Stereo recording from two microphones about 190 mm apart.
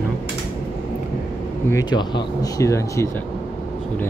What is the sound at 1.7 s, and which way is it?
Speech, 20° left (ahead or behind).